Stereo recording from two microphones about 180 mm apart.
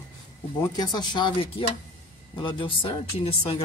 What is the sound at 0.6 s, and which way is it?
Speech, 20° left (ahead or behind).